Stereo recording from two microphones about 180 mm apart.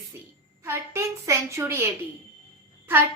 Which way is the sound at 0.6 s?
15° right (ahead or behind).